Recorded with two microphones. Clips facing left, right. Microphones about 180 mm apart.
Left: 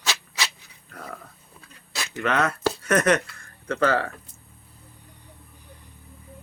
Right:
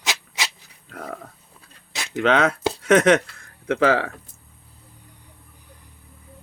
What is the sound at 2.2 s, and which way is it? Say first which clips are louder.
Speech: right 5 dB; 90° right.